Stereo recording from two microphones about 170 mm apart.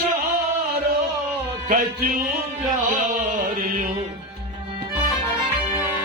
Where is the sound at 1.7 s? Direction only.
55° right (ahead or behind).